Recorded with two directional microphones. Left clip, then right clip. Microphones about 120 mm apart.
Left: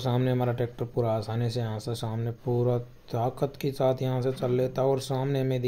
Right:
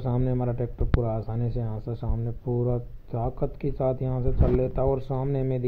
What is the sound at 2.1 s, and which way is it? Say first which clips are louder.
Speech: even; 25° left (ahead or behind).